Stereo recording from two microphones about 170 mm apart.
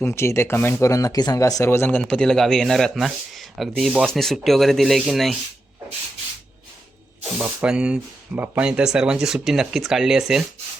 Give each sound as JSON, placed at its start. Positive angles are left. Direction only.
{"t": 0.0, "sound": "speech", "side_deg": 15}
{"t": 7.3, "sound": "speech", "side_deg": -5}